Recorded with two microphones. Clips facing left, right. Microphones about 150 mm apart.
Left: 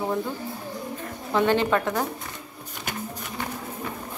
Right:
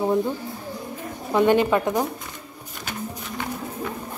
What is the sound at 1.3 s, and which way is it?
Speech, 15° right (ahead or behind).